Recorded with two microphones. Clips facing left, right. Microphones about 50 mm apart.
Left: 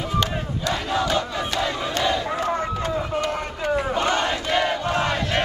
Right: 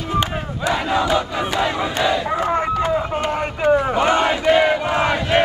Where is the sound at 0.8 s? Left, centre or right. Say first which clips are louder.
Right 3 dB; right.